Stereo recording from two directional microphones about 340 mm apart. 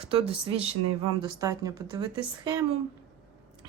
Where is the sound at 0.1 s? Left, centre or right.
Centre.